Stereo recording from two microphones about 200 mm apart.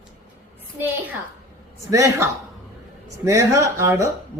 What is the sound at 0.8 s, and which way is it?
A man's voice, 10° right (ahead or behind).